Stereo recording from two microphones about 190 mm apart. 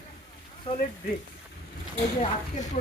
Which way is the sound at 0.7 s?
30° left (ahead or behind).